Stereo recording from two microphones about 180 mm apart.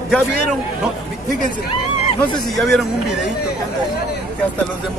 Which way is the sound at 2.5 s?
Centre (ahead or behind).